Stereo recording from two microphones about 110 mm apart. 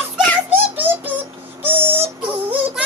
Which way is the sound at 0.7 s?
15° right (ahead or behind).